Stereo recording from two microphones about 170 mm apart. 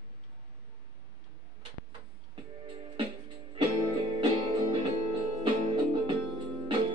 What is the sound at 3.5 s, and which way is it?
Music, 30° right (ahead or behind).